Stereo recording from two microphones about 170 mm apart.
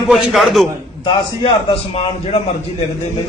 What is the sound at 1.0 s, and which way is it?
A man's voice, 30° left (ahead or behind).